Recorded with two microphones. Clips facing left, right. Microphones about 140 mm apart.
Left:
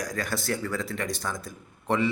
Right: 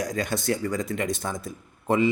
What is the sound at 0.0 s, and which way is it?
A man's voice, 20° right (ahead or behind).